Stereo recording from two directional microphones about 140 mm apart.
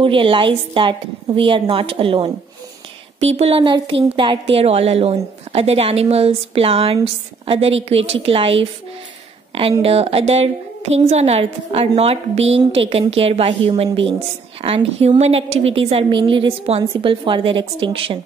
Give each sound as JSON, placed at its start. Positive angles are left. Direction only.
{"t": 0.0, "sound": "a woman's voice", "side_deg": -40}